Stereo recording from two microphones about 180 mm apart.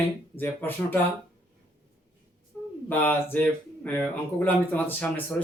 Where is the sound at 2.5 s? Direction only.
Centre (ahead or behind).